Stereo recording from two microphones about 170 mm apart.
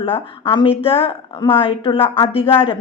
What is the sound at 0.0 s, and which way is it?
Speech, 30° left (ahead or behind).